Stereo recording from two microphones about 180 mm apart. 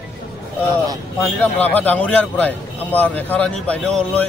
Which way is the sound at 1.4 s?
10° left (ahead or behind).